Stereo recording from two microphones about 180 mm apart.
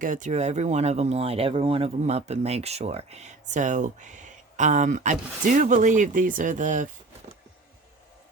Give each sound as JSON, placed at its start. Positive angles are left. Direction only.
{"t": 0.0, "sound": "speech", "side_deg": -45}